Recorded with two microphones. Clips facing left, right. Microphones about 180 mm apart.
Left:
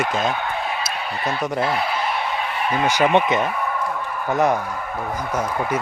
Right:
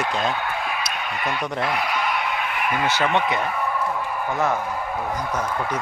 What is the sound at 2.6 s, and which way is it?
Speech, 25° left (ahead or behind).